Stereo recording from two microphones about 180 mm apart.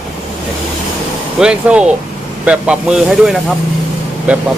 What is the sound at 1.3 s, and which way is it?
Speech, 5° right (ahead or behind).